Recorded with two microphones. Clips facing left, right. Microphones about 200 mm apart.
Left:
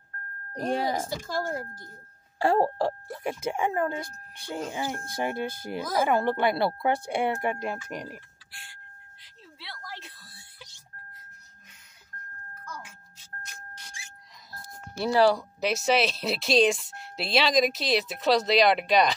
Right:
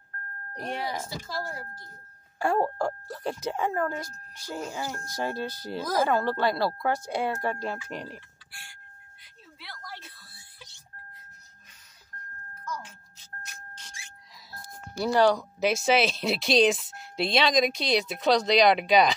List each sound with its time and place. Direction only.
0.6 s speech: 35° left (ahead or behind)
2.3 s a sound: 30° left (ahead or behind)
3.3 s speech: 15° left (ahead or behind)
15.0 s speech: 5° left (ahead or behind)